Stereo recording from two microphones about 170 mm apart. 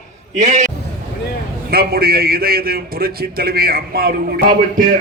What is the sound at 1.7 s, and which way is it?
A man's voice, 65° right (ahead or behind).